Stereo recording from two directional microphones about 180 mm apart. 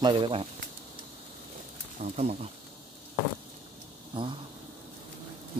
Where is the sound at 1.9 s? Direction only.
40° right (ahead or behind).